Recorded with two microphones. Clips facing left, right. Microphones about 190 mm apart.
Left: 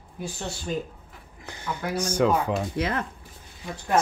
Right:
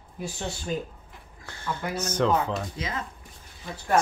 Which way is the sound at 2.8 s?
65° left (ahead or behind).